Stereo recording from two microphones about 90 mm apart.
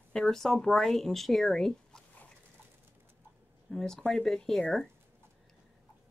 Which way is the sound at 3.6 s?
5° left (ahead or behind).